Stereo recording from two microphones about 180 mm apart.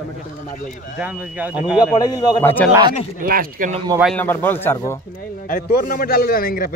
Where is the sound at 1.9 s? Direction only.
20° left (ahead or behind).